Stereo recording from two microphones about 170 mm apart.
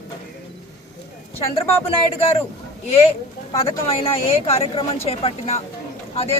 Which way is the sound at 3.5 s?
35° left (ahead or behind).